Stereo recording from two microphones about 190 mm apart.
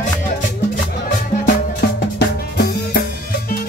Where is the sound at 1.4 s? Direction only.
55° left (ahead or behind).